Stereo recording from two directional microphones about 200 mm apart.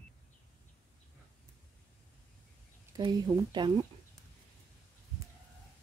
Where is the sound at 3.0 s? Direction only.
20° right (ahead or behind).